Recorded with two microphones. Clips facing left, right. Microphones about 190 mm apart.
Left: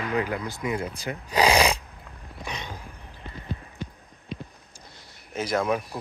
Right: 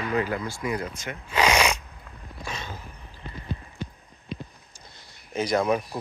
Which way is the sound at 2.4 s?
15° left (ahead or behind).